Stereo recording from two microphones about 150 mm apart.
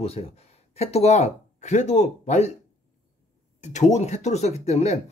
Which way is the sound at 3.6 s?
50° left (ahead or behind).